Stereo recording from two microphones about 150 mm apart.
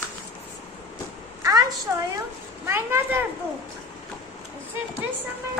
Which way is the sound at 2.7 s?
15° right (ahead or behind).